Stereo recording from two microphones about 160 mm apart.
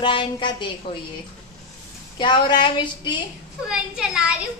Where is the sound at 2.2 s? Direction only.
30° left (ahead or behind).